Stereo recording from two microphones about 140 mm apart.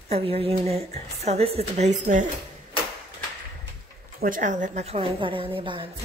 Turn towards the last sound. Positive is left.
turn(degrees=-40)  # may be behind; listen again after turning